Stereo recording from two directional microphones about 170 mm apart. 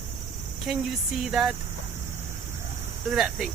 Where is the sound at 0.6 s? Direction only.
5° right (ahead or behind).